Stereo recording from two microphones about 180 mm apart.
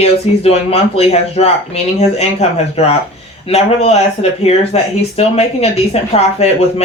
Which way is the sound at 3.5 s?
35° left (ahead or behind).